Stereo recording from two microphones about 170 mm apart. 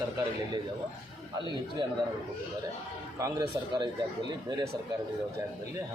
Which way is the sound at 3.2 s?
25° right (ahead or behind).